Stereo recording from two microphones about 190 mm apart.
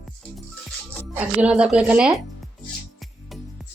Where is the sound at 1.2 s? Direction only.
5° right (ahead or behind).